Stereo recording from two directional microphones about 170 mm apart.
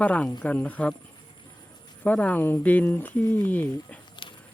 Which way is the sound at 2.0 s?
10° left (ahead or behind).